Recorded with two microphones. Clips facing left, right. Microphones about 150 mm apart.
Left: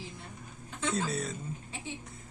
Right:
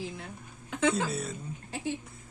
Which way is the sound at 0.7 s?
60° right (ahead or behind).